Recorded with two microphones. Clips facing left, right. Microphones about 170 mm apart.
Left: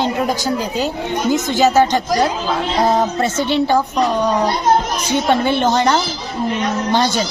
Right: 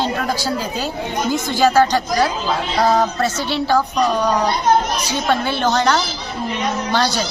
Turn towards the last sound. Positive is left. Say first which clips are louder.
# left 3 dB
turn(degrees=15)  # may be behind; listen again after turning